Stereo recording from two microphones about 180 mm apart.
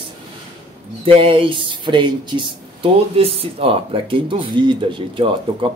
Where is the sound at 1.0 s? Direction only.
30° right (ahead or behind).